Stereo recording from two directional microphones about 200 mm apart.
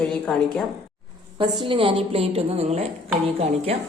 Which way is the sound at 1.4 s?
25° right (ahead or behind).